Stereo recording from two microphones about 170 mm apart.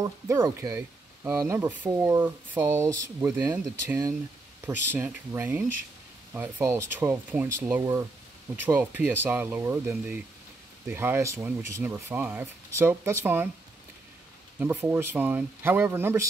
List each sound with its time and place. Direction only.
0.0 s speech: 15° right (ahead or behind)
14.6 s speech: 10° right (ahead or behind)